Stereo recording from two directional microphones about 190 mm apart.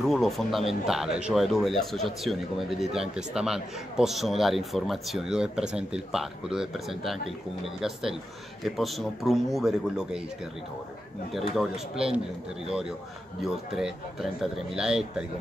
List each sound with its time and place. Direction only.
0.0 s speech: centre (ahead or behind)
11.3 s speech: centre (ahead or behind)
13.7 s speech: centre (ahead or behind)